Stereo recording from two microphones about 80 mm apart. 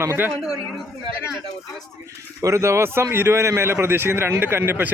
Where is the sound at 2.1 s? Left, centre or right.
Right.